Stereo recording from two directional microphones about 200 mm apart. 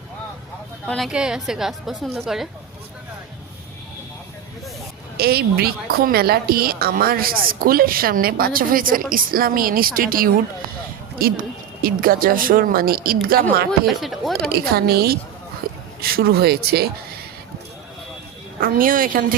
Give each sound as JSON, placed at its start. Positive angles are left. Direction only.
{"t": 0.9, "sound": "a woman's voice", "side_deg": 0}
{"t": 5.1, "sound": "a woman's voice", "side_deg": -50}
{"t": 13.7, "sound": "a woman's voice", "side_deg": 0}
{"t": 14.5, "sound": "a woman's voice", "side_deg": -50}
{"t": 15.6, "sound": "a sound", "side_deg": -50}
{"t": 16.0, "sound": "a woman's voice", "side_deg": -50}
{"t": 18.6, "sound": "a woman's voice", "side_deg": -45}